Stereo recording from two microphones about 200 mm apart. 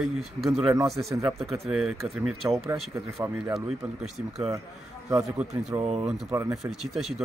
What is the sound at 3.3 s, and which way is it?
Speech, 5° right (ahead or behind).